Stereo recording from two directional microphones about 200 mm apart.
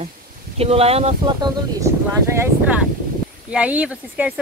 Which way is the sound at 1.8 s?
15° right (ahead or behind).